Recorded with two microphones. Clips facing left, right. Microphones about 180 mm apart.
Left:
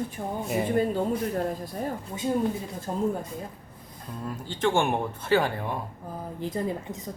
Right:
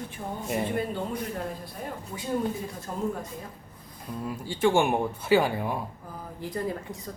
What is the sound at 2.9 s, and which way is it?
Speech, 30° left (ahead or behind).